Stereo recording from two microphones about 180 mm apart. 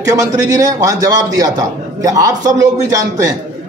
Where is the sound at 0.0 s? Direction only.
20° right (ahead or behind).